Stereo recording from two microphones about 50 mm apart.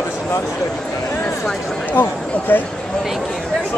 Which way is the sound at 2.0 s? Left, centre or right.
Left.